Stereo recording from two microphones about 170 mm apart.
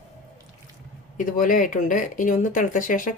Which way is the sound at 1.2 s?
50° left (ahead or behind).